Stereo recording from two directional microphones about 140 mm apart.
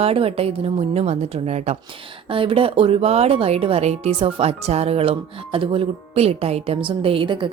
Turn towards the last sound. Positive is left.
turn(degrees=-35)  # may be behind; listen again after turning